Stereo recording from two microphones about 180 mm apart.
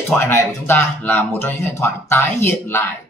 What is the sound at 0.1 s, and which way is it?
Speech, 15° left (ahead or behind).